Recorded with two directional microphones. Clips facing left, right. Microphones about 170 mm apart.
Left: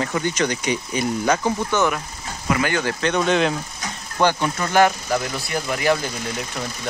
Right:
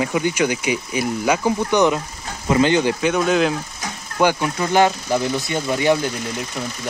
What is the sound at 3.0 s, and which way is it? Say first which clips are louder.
Speech: right 2 dB; 5° right (ahead or behind).